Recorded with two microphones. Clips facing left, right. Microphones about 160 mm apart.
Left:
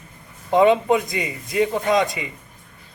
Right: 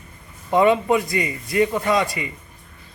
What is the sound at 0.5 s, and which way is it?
A man's voice, 20° left (ahead or behind).